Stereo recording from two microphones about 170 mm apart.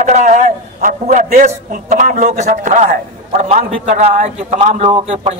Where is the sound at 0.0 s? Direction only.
45° right (ahead or behind).